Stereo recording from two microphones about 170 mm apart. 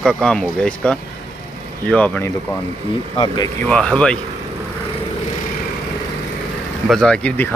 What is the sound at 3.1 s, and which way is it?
Speech, 25° left (ahead or behind).